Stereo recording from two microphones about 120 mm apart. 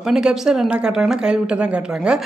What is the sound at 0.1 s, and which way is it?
Speech, 5° right (ahead or behind).